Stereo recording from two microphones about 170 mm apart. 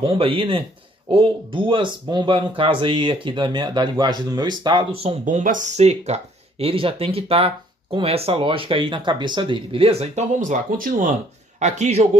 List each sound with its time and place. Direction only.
0.0 s speech: 30° right (ahead or behind)
5.2 s a man's voice: 50° right (ahead or behind)